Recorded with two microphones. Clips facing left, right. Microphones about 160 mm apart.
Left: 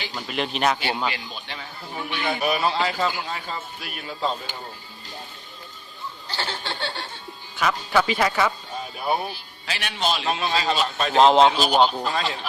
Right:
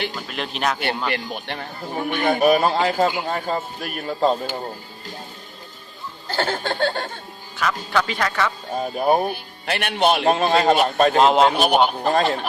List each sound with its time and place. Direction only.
0.3 s speech: centre (ahead or behind)
1.1 s a man's voice: 55° right (ahead or behind)
6.2 s chuckle: 50° right (ahead or behind)
7.5 s speech: centre (ahead or behind)
8.7 s a man's voice: 50° right (ahead or behind)
11.2 s speech: 5° right (ahead or behind)
11.5 s a man's voice: 60° right (ahead or behind)
12.0 s a man's voice: 50° right (ahead or behind)